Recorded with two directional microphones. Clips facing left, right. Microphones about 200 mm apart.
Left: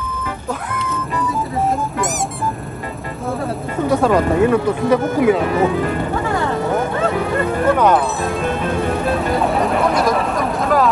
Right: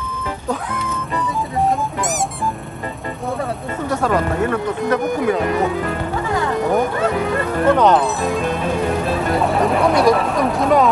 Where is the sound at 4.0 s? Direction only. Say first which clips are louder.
Left 4 dB; 10° left (ahead or behind).